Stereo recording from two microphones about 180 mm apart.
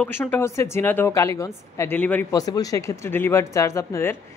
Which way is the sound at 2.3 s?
20° left (ahead or behind).